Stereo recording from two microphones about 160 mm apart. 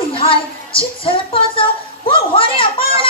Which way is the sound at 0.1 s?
35° left (ahead or behind).